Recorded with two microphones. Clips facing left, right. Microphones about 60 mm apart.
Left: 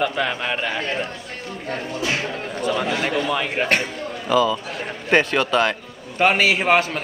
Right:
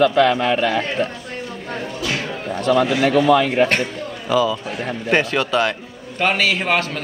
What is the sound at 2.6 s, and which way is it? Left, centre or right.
Speech, right.